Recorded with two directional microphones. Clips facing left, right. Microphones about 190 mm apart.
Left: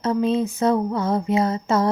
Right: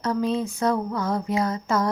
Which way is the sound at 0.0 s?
20° left (ahead or behind).